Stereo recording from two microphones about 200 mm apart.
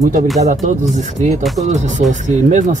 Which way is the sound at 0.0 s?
40° right (ahead or behind).